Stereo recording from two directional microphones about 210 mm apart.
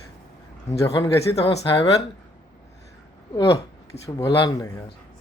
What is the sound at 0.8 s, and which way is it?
Speech, 15° left (ahead or behind).